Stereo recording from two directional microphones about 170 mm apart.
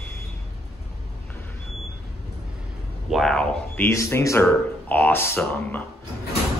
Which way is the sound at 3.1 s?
Centre (ahead or behind).